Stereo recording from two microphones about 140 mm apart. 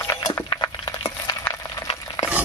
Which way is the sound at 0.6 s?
25° left (ahead or behind).